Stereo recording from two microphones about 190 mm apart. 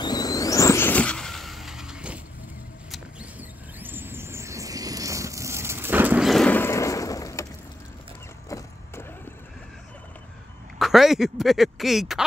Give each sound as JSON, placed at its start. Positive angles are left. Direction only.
{"t": 0.0, "sound": "a sound", "side_deg": 20}
{"t": 2.9, "sound": "vehicle", "side_deg": -5}
{"t": 8.5, "sound": "vehicle", "side_deg": 15}
{"t": 10.8, "sound": "speech", "side_deg": 0}